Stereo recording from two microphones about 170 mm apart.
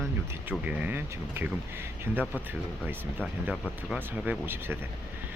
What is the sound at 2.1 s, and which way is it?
Speech, 10° left (ahead or behind).